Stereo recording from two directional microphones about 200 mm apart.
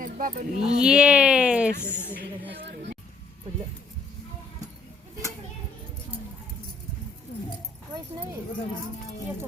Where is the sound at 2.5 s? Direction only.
55° right (ahead or behind).